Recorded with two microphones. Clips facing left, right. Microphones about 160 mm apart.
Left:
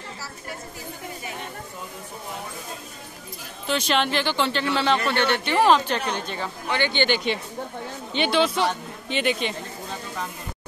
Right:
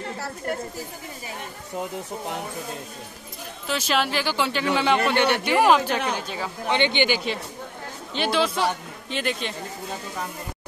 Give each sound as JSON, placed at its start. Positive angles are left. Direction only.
{"t": 3.6, "sound": "a man's voice", "side_deg": -5}
{"t": 6.7, "sound": "speech", "side_deg": -20}
{"t": 7.3, "sound": "speech", "side_deg": 0}